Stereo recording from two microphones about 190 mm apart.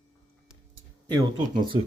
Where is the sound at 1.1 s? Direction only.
25° right (ahead or behind).